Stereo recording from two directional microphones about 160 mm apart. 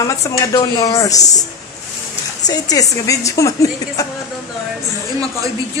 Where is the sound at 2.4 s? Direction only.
20° left (ahead or behind).